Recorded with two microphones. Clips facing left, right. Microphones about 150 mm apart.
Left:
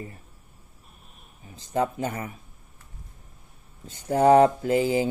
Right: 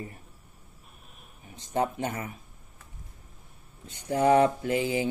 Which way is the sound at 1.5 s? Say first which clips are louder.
Left 2 dB; 35° left (ahead or behind).